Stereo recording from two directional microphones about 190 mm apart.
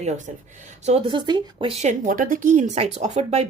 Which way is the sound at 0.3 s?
40° right (ahead or behind).